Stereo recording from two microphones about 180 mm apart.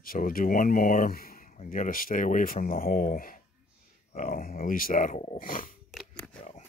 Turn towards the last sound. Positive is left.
turn(degrees=5)  # may be behind; listen again after turning